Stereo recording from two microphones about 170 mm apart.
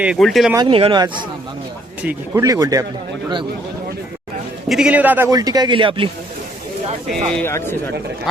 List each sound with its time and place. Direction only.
0.0 s speech: centre (ahead or behind)
0.5 s speech: 30° right (ahead or behind)
2.0 s a man's voice: 10° right (ahead or behind)
2.4 s speech: 20° right (ahead or behind)
4.7 s a man's voice: 5° right (ahead or behind)
5.3 s speech: 20° right (ahead or behind)
7.3 s speech: 15° left (ahead or behind)